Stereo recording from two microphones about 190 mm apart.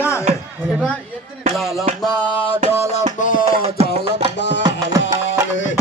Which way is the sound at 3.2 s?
45° left (ahead or behind).